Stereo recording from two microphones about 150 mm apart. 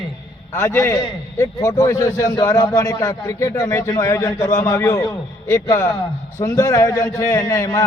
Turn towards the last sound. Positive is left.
turn(degrees=20)  # may be behind; listen again after turning